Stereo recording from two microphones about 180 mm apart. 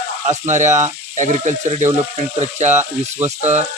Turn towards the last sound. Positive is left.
turn(degrees=-40)  # may be behind; listen again after turning